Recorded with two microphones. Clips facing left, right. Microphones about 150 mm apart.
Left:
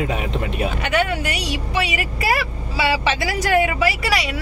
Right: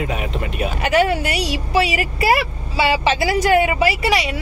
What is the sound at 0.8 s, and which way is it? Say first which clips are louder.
Speech: right 6 dB; 35° right (ahead or behind).